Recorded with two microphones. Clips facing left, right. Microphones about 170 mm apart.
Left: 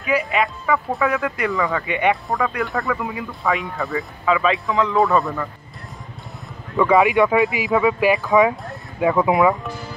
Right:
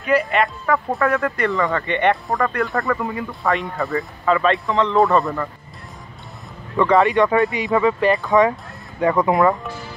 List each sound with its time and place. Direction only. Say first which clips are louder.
0.0 s speech: right 2 dB; centre (ahead or behind)
6.8 s speech: even; 5° left (ahead or behind)